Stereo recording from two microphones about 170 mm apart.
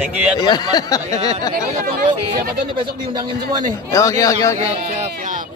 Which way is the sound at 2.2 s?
30° right (ahead or behind).